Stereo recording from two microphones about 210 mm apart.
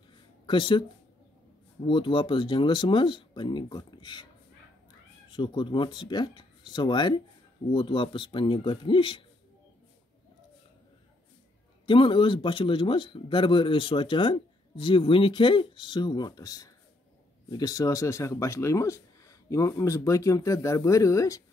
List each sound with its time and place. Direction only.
0.5 s speech: 25° left (ahead or behind)
1.9 s speech: 25° left (ahead or behind)
5.3 s speech: 20° left (ahead or behind)
11.8 s speech: 25° left (ahead or behind)